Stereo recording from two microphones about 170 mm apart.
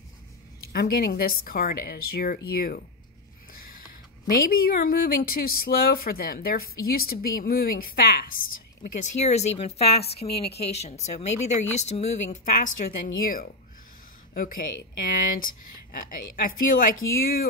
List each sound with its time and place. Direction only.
0.7 s speech: 60° left (ahead or behind)
4.3 s speech: 60° left (ahead or behind)
8.8 s speech: 45° left (ahead or behind)